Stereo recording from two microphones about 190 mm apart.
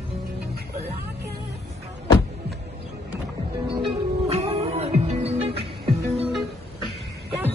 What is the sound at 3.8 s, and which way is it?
Music, 30° right (ahead or behind).